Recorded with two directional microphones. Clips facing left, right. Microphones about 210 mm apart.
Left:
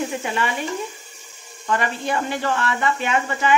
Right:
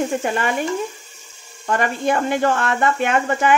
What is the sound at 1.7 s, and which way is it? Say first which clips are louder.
Speech: right 4 dB; 50° right (ahead or behind).